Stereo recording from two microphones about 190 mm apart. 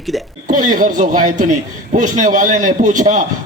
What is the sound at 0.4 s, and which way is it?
A man's voice, 45° right (ahead or behind).